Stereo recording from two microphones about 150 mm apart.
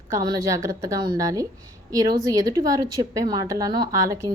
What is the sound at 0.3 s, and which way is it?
A woman's voice, 20° right (ahead or behind).